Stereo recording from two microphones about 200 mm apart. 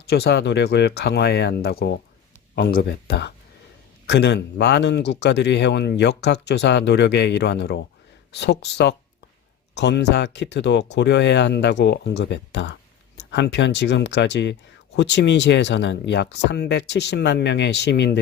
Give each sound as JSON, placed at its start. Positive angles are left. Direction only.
{"t": 0.1, "sound": "speech", "side_deg": 55}